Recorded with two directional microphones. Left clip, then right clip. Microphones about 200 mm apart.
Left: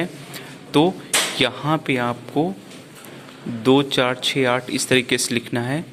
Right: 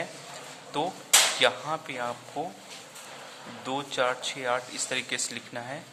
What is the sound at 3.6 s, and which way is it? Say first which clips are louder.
A man's voice: left 11 dB; 20° left (ahead or behind).